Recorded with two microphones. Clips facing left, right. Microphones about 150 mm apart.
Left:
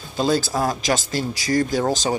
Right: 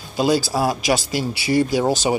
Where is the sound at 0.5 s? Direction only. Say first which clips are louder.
Right 2 dB; 10° right (ahead or behind).